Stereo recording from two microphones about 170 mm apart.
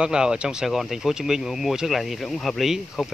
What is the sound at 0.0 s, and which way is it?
Speech, 5° right (ahead or behind).